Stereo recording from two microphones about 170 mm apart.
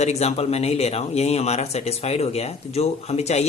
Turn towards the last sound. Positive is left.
turn(degrees=40)  # may be behind; listen again after turning